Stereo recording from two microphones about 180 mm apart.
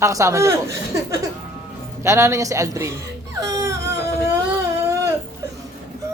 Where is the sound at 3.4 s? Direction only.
20° right (ahead or behind).